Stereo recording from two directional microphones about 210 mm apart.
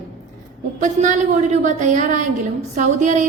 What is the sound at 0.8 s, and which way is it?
A woman's voice, 35° right (ahead or behind).